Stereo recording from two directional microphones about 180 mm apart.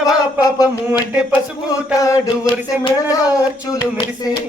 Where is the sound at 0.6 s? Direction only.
5° right (ahead or behind).